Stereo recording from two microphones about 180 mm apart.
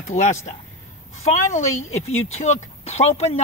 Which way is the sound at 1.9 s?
35° left (ahead or behind).